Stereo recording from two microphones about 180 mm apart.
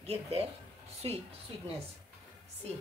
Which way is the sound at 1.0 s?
30° right (ahead or behind).